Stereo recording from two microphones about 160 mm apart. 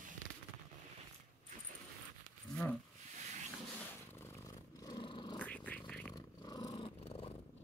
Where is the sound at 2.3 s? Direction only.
10° left (ahead or behind).